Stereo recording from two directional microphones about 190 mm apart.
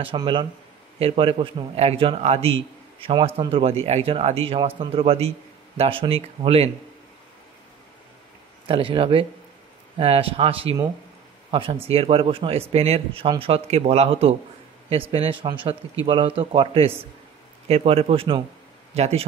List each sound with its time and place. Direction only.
0.0 s a man's voice: 25° right (ahead or behind)
8.6 s a man's voice: 30° right (ahead or behind)